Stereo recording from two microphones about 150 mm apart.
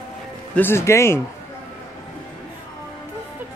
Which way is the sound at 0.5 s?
15° left (ahead or behind).